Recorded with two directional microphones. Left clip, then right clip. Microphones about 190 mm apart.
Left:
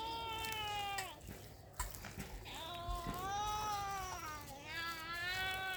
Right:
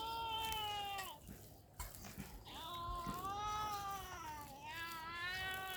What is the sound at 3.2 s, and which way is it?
Baby cry, 45° left (ahead or behind).